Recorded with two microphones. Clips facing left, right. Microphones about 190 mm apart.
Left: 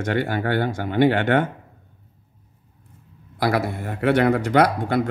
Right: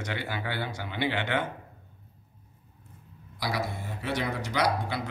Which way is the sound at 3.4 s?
60° left (ahead or behind).